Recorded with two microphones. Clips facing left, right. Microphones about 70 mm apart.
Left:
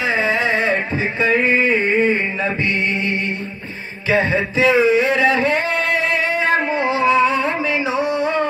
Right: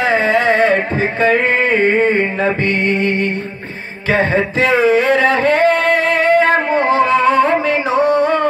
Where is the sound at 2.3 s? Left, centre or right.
Right.